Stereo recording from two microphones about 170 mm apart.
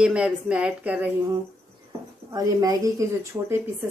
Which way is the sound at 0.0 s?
5° right (ahead or behind).